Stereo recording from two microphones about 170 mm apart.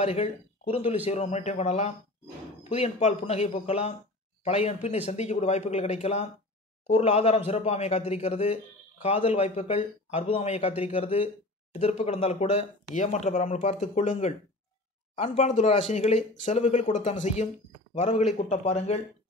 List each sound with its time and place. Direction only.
0.0 s a man's voice: 35° left (ahead or behind)